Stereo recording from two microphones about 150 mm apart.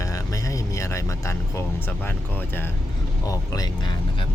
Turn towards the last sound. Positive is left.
turn(degrees=30)  # may be behind; listen again after turning